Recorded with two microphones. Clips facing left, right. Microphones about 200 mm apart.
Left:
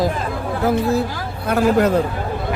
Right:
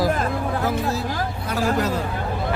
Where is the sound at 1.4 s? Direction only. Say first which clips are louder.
Left 8 dB; 55° left (ahead or behind).